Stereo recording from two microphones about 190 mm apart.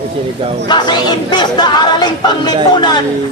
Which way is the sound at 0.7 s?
25° left (ahead or behind).